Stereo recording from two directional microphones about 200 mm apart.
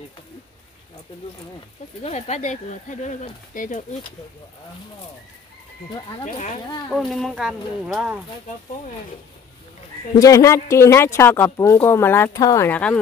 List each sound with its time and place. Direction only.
2.0 s speech: 35° left (ahead or behind)
6.2 s speech: 35° left (ahead or behind)
6.9 s speech: centre (ahead or behind)
10.2 s speech: 15° left (ahead or behind)